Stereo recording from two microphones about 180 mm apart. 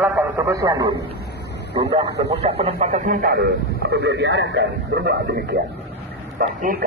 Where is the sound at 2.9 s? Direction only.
45° right (ahead or behind); by 5.6 s 65° right (ahead or behind).